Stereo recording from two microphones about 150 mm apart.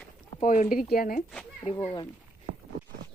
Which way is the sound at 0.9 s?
70° left (ahead or behind).